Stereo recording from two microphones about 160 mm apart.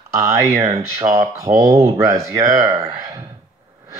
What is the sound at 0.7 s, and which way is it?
Speech, 20° right (ahead or behind).